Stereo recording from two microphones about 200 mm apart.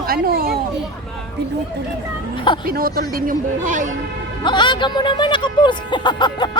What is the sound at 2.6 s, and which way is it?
Speech, 50° right (ahead or behind).